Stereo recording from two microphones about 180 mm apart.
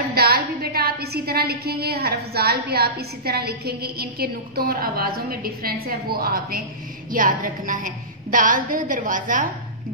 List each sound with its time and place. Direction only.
0.1 s a woman's voice: 60° right (ahead or behind)